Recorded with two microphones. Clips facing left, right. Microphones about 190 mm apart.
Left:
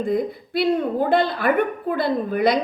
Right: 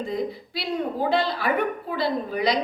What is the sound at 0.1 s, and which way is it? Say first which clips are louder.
A woman's voice: left 6 dB; 55° left (ahead or behind).